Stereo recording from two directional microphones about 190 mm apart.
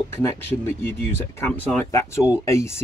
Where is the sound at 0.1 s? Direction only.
10° left (ahead or behind).